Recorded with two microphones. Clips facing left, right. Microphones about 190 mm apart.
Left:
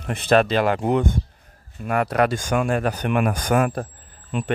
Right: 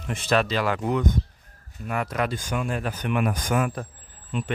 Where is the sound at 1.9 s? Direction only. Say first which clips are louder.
Left 7 dB; 65° left (ahead or behind).